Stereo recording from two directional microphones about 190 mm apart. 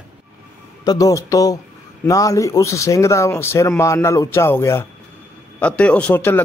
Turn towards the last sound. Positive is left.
turn(degrees=10)  # may be behind; listen again after turning